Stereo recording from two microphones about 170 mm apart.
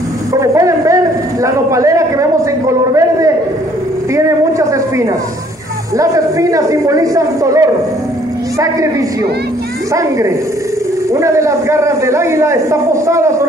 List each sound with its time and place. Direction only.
0.3 s a sound: 20° right (ahead or behind)
5.9 s a man's voice: 20° right (ahead or behind)
9.9 s a man's voice: 20° right (ahead or behind)